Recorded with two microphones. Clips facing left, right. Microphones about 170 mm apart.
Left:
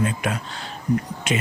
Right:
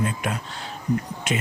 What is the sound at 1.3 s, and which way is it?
Speech, 90° left.